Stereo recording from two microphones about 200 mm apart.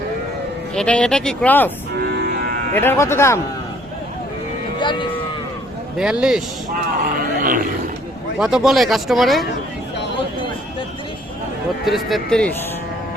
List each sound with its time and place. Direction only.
0.7 s speech: 5° left (ahead or behind)
2.0 s music: 50° right (ahead or behind)
2.7 s speech: 10° left (ahead or behind)
4.8 s speech: 25° left (ahead or behind)
6.0 s speech: 5° right (ahead or behind)
6.7 s speech: 45° right (ahead or behind)
8.4 s speech: centre (ahead or behind)
11.9 s speech: centre (ahead or behind)